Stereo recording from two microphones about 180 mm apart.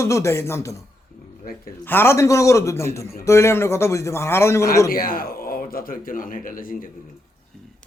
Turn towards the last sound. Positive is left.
turn(degrees=50)  # may be behind; listen again after turning